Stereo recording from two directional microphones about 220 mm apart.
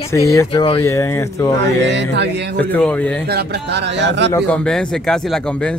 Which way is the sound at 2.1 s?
50° right (ahead or behind).